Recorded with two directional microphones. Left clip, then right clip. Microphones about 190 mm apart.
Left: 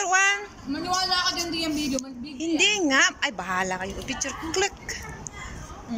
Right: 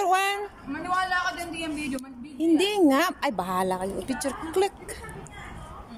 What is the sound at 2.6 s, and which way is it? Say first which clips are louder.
A woman's voice: left 5 dB; 25° right (ahead or behind).